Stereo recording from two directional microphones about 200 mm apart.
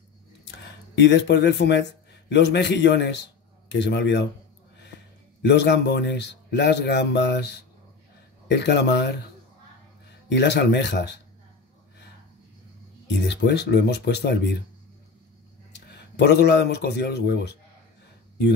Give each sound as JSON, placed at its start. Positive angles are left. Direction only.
{"t": 0.5, "sound": "a man's voice", "side_deg": 60}
{"t": 5.4, "sound": "a man's voice", "side_deg": 60}
{"t": 10.3, "sound": "a man's voice", "side_deg": 60}
{"t": 13.3, "sound": "a man's voice", "side_deg": 55}
{"t": 15.7, "sound": "speech", "side_deg": 60}